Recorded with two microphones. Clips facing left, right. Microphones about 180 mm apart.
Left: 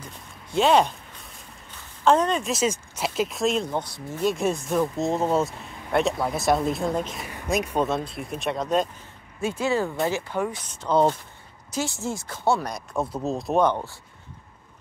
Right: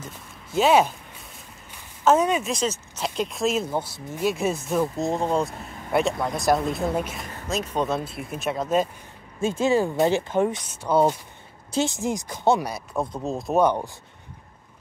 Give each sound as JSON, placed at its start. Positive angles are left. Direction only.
{"t": 0.5, "sound": "speech", "side_deg": -5}
{"t": 1.7, "sound": "a sound", "side_deg": -10}
{"t": 2.5, "sound": "speech", "side_deg": 10}
{"t": 7.4, "sound": "speech", "side_deg": 15}
{"t": 7.8, "sound": "speech", "side_deg": 0}
{"t": 9.4, "sound": "speech", "side_deg": -25}
{"t": 10.7, "sound": "speech", "side_deg": -10}
{"t": 11.7, "sound": "speech", "side_deg": -20}
{"t": 13.7, "sound": "speech", "side_deg": -10}